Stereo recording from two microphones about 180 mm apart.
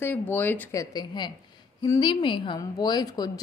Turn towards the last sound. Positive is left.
turn(degrees=20)  # may be behind; listen again after turning